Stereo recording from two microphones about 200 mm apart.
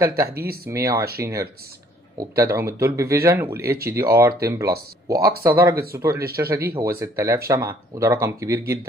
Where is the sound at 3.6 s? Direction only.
50° right (ahead or behind).